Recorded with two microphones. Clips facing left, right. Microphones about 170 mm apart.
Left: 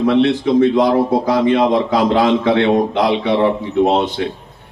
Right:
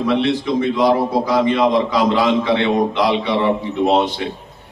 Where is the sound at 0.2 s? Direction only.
55° left (ahead or behind).